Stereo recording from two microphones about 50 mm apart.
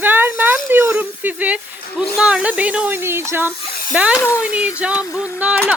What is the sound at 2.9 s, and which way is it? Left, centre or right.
Speech, right.